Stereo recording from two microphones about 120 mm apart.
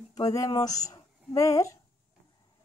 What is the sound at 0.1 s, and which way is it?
Speech, 30° left (ahead or behind).